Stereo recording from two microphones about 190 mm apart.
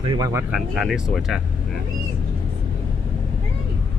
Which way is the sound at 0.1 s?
20° right (ahead or behind).